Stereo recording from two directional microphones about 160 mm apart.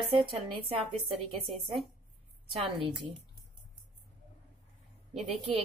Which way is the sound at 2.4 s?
30° right (ahead or behind).